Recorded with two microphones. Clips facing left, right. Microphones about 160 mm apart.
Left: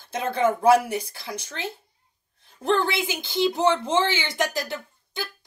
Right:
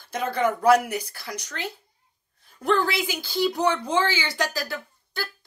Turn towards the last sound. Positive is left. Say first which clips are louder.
# even
turn(degrees=20)  # may be behind; listen again after turning